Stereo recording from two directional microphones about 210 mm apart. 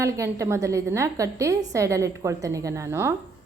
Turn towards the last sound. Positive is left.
turn(degrees=-10)  # may be behind; listen again after turning